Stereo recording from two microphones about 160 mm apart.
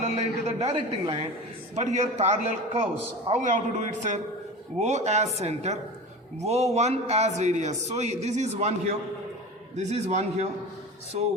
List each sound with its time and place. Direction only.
0.0 s a man's voice: 40° right (ahead or behind)
9.7 s a man's voice: 45° right (ahead or behind)